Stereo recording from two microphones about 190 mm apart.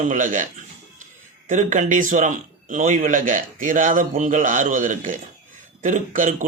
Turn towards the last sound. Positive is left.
turn(degrees=-40)  # may be behind; listen again after turning